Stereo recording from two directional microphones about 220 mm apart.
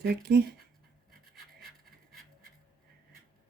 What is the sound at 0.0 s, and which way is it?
Speech, 45° right (ahead or behind).